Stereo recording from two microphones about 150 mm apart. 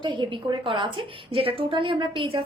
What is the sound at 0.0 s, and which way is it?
A woman's voice, 35° right (ahead or behind).